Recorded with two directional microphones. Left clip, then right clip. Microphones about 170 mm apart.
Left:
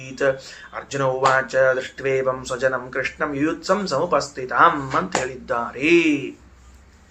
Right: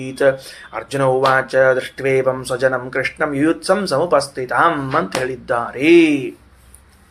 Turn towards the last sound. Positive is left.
turn(degrees=-30)  # may be behind; listen again after turning